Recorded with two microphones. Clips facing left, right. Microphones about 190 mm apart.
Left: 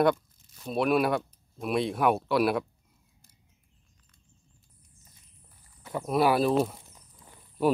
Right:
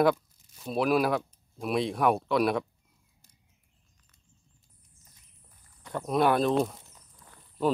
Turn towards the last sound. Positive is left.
turn(degrees=15)  # may be behind; listen again after turning